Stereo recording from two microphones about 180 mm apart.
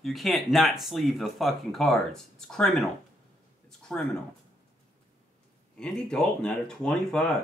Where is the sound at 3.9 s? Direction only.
10° left (ahead or behind).